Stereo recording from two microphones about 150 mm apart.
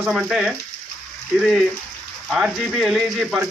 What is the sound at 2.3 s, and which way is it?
Speech, centre (ahead or behind).